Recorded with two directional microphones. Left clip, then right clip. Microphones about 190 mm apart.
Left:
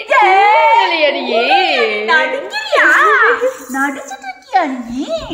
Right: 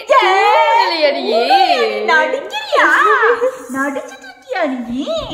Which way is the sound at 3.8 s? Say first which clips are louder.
Left 2 dB; 30° right (ahead or behind).